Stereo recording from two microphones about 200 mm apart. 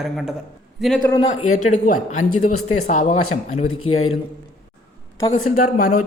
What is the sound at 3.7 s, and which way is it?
Speech, 90° left.